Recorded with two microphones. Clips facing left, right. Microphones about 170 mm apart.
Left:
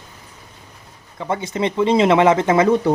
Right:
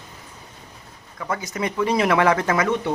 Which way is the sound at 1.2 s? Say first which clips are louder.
Left 5 dB; 25° left (ahead or behind).